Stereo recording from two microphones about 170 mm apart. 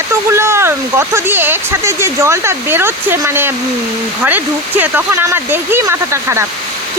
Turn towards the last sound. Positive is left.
turn(degrees=-15)  # may be behind; listen again after turning